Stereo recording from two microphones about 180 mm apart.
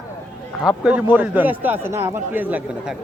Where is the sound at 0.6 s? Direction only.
5° right (ahead or behind).